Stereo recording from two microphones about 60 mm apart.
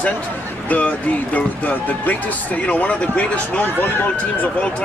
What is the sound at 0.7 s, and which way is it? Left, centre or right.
Speech, left.